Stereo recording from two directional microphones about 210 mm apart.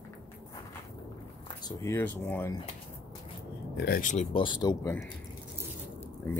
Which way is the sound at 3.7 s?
50° left (ahead or behind).